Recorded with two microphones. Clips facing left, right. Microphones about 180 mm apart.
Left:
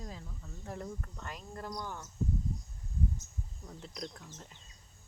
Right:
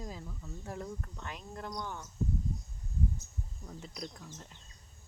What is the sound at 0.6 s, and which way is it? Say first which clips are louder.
Speech: even; centre (ahead or behind).